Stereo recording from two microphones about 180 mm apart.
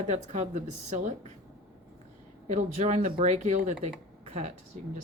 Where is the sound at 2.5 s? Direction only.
40° right (ahead or behind).